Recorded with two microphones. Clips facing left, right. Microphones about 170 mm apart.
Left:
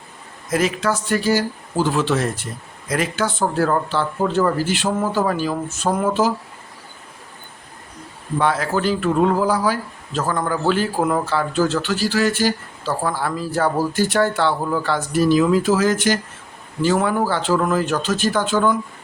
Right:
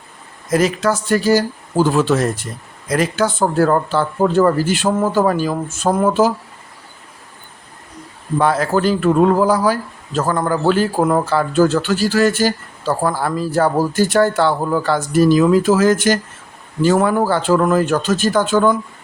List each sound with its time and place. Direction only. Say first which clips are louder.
0.5 s speech: right 4 dB; 40° right (ahead or behind)
8.4 s speech: right 4 dB; 40° right (ahead or behind)